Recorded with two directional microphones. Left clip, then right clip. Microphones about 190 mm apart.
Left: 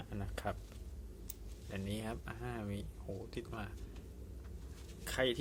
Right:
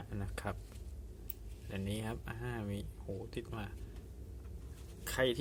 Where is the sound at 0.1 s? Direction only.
5° right (ahead or behind).